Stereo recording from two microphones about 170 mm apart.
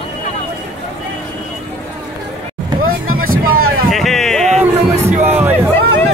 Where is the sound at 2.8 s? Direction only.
55° right (ahead or behind).